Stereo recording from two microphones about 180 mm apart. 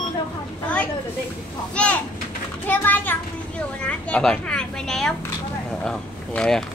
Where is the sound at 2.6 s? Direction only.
10° left (ahead or behind).